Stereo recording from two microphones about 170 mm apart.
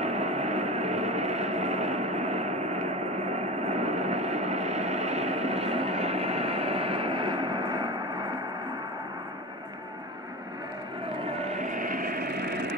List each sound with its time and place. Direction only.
0.0 s vehicle: 40° right (ahead or behind); by 7.9 s 25° right (ahead or behind)
11.1 s vehicle: 35° right (ahead or behind); by 12.4 s 60° right (ahead or behind)